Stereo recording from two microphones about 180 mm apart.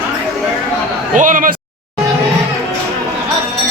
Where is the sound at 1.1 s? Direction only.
45° right (ahead or behind).